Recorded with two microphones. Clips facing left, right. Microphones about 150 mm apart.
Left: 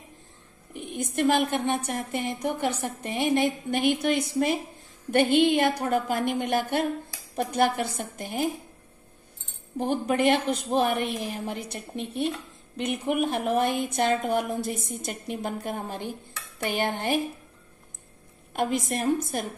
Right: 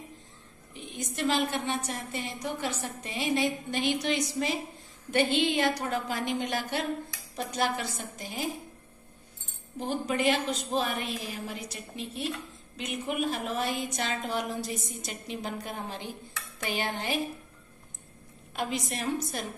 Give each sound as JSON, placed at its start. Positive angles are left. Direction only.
{"t": 0.7, "sound": "a woman's voice", "side_deg": 55}
{"t": 9.8, "sound": "a woman's voice", "side_deg": 55}
{"t": 18.5, "sound": "a woman's voice", "side_deg": 50}